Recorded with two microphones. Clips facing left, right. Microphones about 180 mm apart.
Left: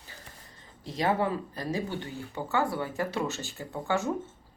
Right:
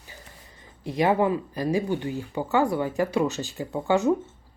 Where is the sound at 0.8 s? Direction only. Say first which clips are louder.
Right 6 dB; 15° right (ahead or behind).